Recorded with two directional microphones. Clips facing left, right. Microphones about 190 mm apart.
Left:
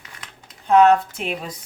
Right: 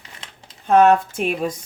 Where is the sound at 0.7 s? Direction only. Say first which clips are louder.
Even; 50° right (ahead or behind).